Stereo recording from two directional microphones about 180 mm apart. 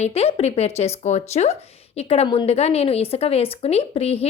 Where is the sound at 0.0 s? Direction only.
35° left (ahead or behind).